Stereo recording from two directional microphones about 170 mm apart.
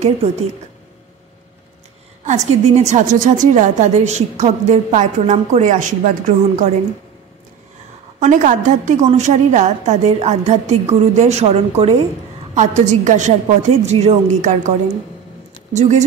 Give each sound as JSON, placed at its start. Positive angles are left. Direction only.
{"t": 0.0, "sound": "a woman's voice", "side_deg": -40}
{"t": 2.2, "sound": "a woman's voice", "side_deg": -40}
{"t": 8.2, "sound": "a woman's voice", "side_deg": -45}
{"t": 15.7, "sound": "a woman's voice", "side_deg": -45}